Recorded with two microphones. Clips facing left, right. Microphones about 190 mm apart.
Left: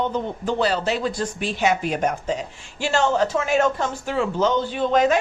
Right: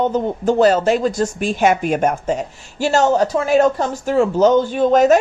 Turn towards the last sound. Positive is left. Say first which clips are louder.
# right 6 dB
turn(degrees=-45)  # may be behind; listen again after turning